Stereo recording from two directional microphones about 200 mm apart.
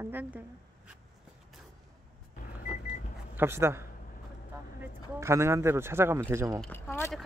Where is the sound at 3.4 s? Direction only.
10° right (ahead or behind).